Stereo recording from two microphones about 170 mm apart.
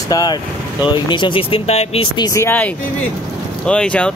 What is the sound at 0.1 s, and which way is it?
Speech, 25° left (ahead or behind).